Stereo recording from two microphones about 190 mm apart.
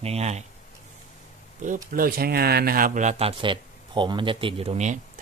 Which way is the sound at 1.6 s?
45° right (ahead or behind).